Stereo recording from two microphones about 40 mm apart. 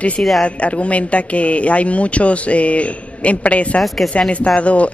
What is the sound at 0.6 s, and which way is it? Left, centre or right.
Speech, left.